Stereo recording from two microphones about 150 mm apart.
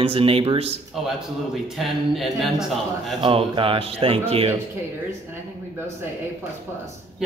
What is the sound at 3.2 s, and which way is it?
Speech, 35° right (ahead or behind).